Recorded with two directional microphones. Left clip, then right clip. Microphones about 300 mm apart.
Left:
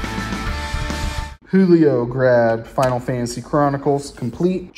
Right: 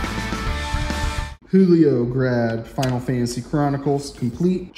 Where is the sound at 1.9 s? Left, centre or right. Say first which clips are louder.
Left 2 dB; left.